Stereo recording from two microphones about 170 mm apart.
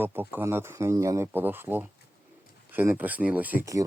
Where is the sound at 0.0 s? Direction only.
10° right (ahead or behind).